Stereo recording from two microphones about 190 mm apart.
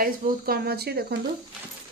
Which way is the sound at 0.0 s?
50° right (ahead or behind).